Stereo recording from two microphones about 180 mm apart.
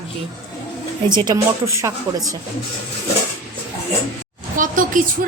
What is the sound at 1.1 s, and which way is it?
A woman's voice, 25° right (ahead or behind).